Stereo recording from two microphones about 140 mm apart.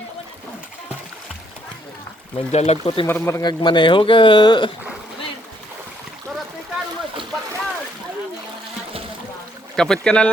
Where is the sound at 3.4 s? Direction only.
35° left (ahead or behind).